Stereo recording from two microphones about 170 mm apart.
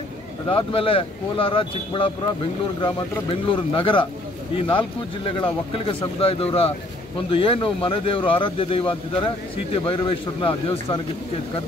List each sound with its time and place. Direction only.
0.5 s speech: 30° left (ahead or behind)